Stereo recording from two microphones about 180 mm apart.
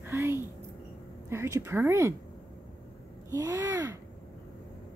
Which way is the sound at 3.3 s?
15° right (ahead or behind).